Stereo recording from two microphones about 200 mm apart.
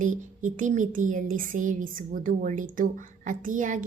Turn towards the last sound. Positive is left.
turn(degrees=-40)  # may be behind; listen again after turning